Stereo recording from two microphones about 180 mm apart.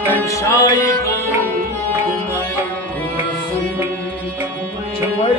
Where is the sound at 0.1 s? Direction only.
15° left (ahead or behind).